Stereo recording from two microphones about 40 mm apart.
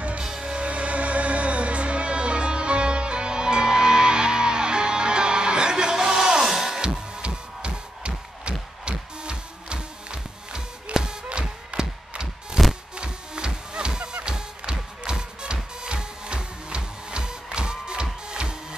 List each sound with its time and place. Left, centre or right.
0.2 s music: centre
0.7 s music: right; by 6.8 s centre
6.8 s music: right
11.2 s a sound: right
12.9 s music: right